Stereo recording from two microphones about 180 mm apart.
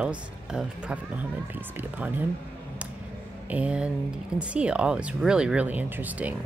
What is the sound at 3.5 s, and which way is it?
Speech, 5° right (ahead or behind).